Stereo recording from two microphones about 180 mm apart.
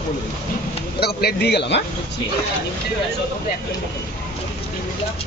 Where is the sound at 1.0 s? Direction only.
60° left (ahead or behind).